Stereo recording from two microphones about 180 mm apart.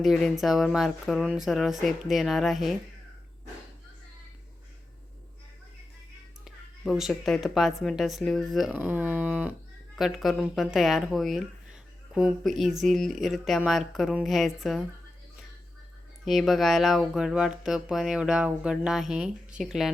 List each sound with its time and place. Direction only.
0.0 s a woman's voice: centre (ahead or behind)
6.4 s a woman's voice: centre (ahead or behind)
16.2 s a woman's voice: centre (ahead or behind)